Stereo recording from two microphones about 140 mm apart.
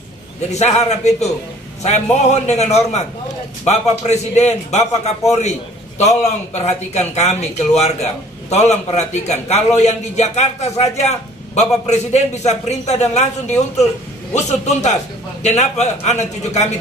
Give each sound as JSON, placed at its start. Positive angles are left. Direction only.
{"t": 0.5, "sound": "a man's voice", "side_deg": 50}
{"t": 2.4, "sound": "a man's voice", "side_deg": 50}